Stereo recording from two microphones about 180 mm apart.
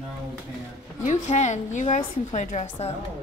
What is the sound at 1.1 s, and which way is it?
A woman's voice, 40° left (ahead or behind).